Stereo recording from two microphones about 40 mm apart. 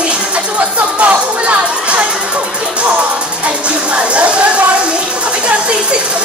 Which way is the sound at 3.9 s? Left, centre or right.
Right.